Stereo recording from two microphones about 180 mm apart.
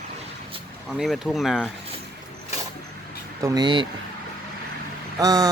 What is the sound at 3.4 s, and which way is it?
Speech, 25° right (ahead or behind).